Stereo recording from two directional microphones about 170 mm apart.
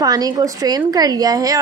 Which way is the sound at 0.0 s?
20° right (ahead or behind).